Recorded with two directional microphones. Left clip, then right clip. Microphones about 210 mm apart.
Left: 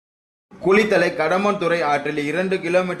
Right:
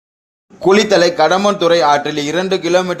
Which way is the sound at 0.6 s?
20° right (ahead or behind).